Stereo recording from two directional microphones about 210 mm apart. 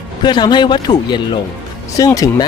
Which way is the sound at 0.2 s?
20° left (ahead or behind).